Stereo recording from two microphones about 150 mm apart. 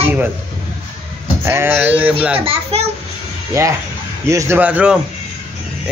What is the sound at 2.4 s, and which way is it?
Speech, 40° right (ahead or behind).